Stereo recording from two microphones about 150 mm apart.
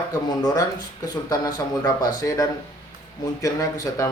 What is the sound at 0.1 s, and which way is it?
Speech, 25° left (ahead or behind).